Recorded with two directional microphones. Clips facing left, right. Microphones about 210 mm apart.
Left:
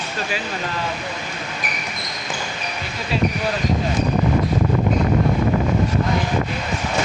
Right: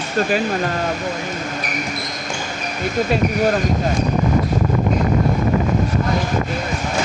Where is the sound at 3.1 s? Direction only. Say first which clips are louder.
Right 2 dB; 45° right (ahead or behind).